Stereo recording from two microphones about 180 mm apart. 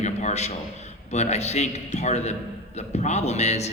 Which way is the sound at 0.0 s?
40° left (ahead or behind).